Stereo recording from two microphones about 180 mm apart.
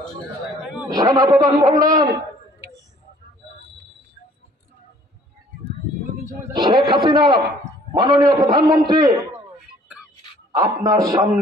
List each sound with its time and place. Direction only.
0.8 s a man's voice: 20° right (ahead or behind)
2.0 s a sound: 15° right (ahead or behind)
6.5 s a man's voice: 25° right (ahead or behind)
10.5 s a man's voice: 20° right (ahead or behind)